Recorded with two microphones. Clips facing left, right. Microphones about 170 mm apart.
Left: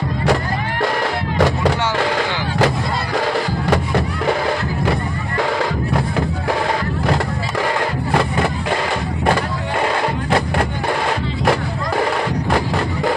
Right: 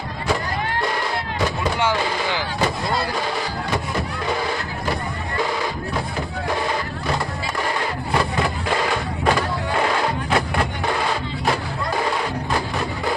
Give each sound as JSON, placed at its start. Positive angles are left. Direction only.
{"t": 1.4, "sound": "music", "side_deg": 75}